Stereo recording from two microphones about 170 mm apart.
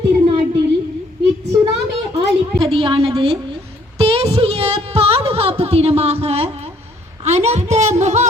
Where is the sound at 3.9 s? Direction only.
35° right (ahead or behind).